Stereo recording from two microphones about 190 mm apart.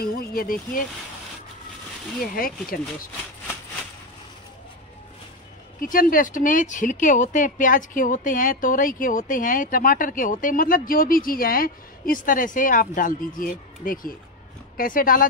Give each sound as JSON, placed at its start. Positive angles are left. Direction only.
{"t": 0.0, "sound": "speech", "side_deg": 55}
{"t": 2.3, "sound": "speech", "side_deg": 50}
{"t": 5.8, "sound": "speech", "side_deg": 45}